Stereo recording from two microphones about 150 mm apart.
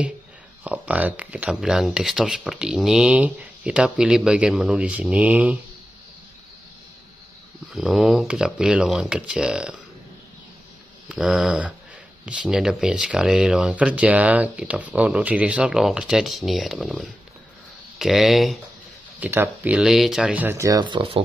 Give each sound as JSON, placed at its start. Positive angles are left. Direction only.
{"t": 0.7, "sound": "speech", "side_deg": -10}
{"t": 7.7, "sound": "speech", "side_deg": 0}
{"t": 11.1, "sound": "speech", "side_deg": -5}
{"t": 19.1, "sound": "speech", "side_deg": -10}
{"t": 20.8, "sound": "speech", "side_deg": -35}